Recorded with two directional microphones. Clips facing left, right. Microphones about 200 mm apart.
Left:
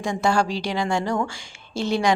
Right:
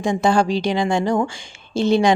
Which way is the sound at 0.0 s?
20° right (ahead or behind).